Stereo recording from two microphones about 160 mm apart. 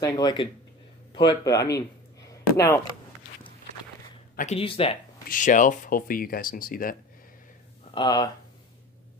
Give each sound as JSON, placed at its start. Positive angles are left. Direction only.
{"t": 0.0, "sound": "speech", "side_deg": 25}
{"t": 1.1, "sound": "a sound", "side_deg": 25}
{"t": 4.6, "sound": "speech", "side_deg": 35}
{"t": 5.3, "sound": "speech", "side_deg": 55}
{"t": 7.9, "sound": "speech", "side_deg": 25}